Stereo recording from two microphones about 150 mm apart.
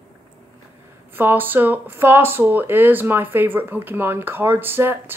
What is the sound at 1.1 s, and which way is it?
Speech, 15° right (ahead or behind).